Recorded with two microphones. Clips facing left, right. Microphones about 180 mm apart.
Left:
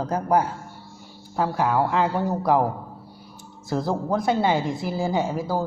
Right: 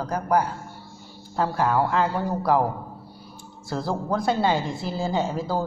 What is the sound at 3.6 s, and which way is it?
A woman's voice, 20° left (ahead or behind).